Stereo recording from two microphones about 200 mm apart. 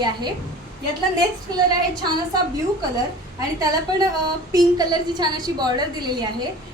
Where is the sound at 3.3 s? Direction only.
20° right (ahead or behind).